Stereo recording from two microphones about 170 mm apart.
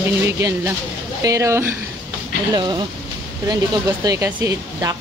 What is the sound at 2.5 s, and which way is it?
Speech, 25° right (ahead or behind).